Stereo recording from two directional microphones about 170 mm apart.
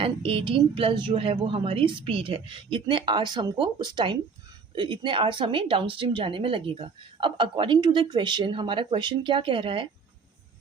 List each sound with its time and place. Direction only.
0.0 s a woman's voice: 30° right (ahead or behind)